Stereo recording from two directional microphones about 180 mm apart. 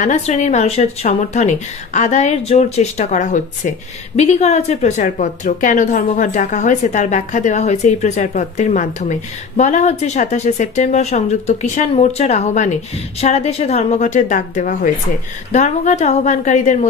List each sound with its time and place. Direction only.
0.0 s a woman's voice: 40° left (ahead or behind)